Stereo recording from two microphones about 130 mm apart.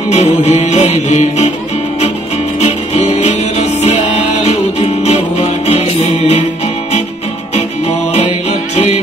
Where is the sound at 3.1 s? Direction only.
55° left (ahead or behind).